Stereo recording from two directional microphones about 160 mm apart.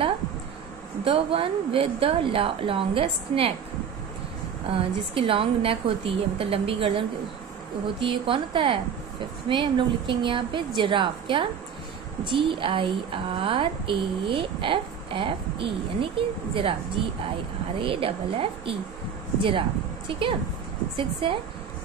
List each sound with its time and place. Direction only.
1.0 s speech: 35° right (ahead or behind)
4.6 s speech: 35° right (ahead or behind)
20.1 s speech: 35° right (ahead or behind)